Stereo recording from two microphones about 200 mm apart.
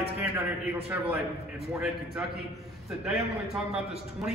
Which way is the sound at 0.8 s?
5° right (ahead or behind).